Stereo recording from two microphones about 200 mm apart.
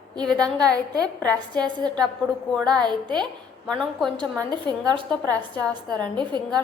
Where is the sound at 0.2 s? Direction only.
5° left (ahead or behind).